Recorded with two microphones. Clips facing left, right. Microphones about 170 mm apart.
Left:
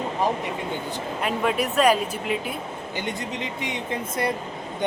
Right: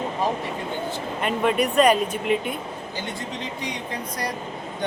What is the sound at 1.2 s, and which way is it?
Speech, 5° left (ahead or behind).